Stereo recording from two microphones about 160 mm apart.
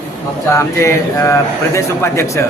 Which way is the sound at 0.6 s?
15° left (ahead or behind).